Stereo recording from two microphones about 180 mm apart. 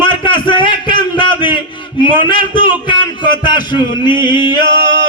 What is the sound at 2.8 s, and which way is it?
Speech, 25° left (ahead or behind).